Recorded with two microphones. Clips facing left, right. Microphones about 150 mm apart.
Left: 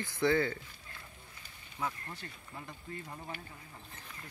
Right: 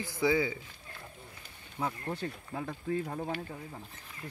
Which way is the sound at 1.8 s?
35° right (ahead or behind).